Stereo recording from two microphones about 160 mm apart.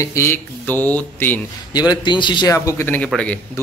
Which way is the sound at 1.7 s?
25° left (ahead or behind).